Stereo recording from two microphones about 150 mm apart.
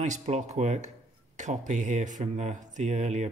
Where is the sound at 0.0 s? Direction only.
50° right (ahead or behind).